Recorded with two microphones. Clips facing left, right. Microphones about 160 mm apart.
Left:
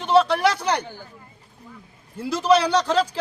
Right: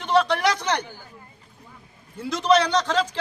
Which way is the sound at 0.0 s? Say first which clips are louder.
Left 3 dB; 30° left (ahead or behind).